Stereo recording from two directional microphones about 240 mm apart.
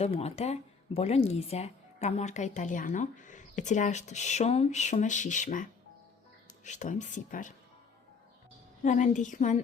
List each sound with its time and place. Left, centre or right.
0.0 s speech: left
6.7 s speech: left
8.8 s speech: left